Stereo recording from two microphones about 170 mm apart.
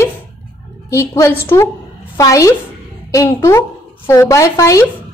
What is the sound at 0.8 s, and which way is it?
A woman's voice, 15° left (ahead or behind).